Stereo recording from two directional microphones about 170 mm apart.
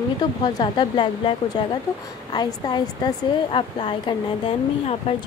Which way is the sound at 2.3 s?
25° left (ahead or behind).